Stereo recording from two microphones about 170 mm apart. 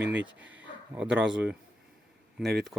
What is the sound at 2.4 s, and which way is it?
Speech, 80° right.